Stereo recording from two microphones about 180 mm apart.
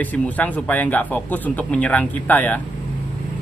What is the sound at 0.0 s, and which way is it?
Speech, 10° left (ahead or behind).